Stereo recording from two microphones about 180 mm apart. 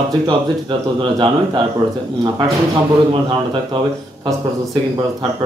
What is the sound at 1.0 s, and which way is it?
Speech, 25° right (ahead or behind).